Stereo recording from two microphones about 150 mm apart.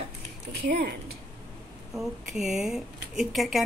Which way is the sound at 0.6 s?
90° right.